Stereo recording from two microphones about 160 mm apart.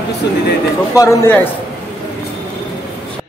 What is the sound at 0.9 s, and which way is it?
Speech, 20° left (ahead or behind).